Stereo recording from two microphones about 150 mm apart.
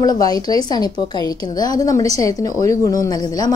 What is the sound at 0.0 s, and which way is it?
A woman's voice, 25° left (ahead or behind).